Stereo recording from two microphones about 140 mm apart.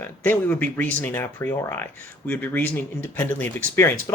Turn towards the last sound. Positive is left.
turn(degrees=15)  # may be behind; listen again after turning